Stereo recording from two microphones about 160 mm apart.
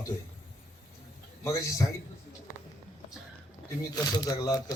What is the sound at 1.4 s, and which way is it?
Speech, 20° left (ahead or behind).